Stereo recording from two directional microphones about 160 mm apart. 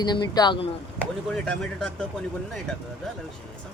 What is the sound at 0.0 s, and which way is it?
Speech, 25° left (ahead or behind).